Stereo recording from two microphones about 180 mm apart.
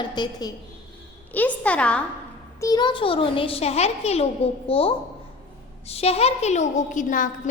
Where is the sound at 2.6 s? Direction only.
20° left (ahead or behind).